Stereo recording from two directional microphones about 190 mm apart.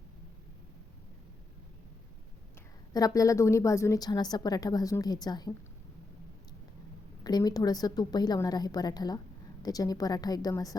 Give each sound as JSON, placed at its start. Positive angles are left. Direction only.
{"t": 2.9, "sound": "a woman's voice", "side_deg": 20}
{"t": 7.3, "sound": "a woman's voice", "side_deg": 20}